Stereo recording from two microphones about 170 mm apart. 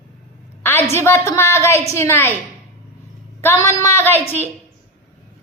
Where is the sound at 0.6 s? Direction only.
15° left (ahead or behind).